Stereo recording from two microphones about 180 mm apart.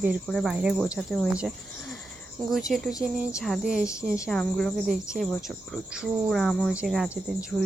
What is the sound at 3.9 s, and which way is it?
Speech, 15° left (ahead or behind).